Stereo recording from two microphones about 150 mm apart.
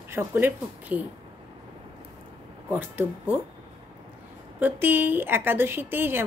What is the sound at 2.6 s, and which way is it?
Speech, 10° right (ahead or behind).